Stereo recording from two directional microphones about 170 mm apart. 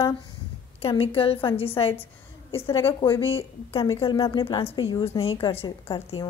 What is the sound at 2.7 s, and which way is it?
Speech, 20° left (ahead or behind).